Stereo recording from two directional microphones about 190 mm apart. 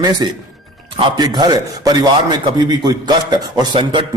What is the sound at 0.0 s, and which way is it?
A man's voice, 20° right (ahead or behind).